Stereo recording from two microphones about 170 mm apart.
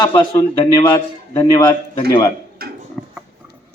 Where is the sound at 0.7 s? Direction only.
15° left (ahead or behind).